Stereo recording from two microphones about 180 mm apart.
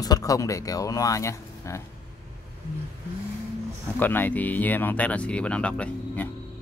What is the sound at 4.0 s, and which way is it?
Speech, 10° left (ahead or behind).